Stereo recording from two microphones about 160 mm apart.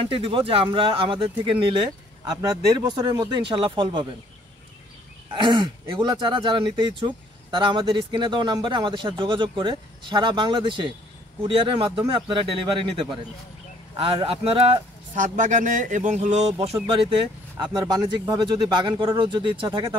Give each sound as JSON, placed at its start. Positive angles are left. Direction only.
{"t": 0.0, "sound": "speech", "side_deg": -35}
{"t": 5.3, "sound": "speech", "side_deg": -30}
{"t": 13.9, "sound": "speech", "side_deg": -35}
{"t": 15.1, "sound": "speech", "side_deg": -55}
{"t": 16.6, "sound": "speech", "side_deg": -35}